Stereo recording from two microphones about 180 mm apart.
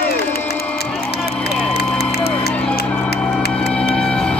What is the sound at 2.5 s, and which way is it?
Music, 5° left (ahead or behind).